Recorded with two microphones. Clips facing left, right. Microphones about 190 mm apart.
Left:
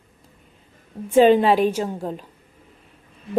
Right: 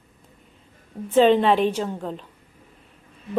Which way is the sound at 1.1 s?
10° left (ahead or behind).